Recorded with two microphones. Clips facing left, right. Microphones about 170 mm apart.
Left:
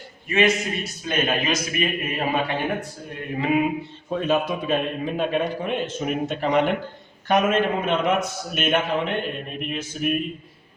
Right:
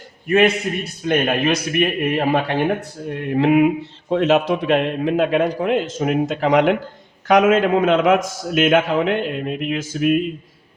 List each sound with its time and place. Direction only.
0.3 s speech: 60° right (ahead or behind)
3.3 s a sound: 65° right (ahead or behind)
4.1 s a man's voice: 80° right